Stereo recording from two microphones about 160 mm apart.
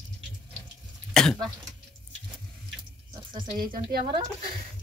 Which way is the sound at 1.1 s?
5° left (ahead or behind).